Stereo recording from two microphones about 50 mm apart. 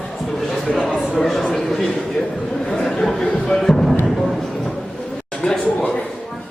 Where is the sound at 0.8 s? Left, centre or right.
Centre.